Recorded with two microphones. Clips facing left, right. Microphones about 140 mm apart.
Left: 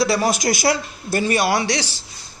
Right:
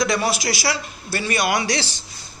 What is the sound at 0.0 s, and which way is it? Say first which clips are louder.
Speech: left 2 dB; 35° left (ahead or behind).